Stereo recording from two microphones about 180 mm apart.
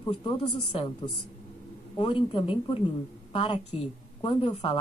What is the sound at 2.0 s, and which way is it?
Speech, 30° left (ahead or behind).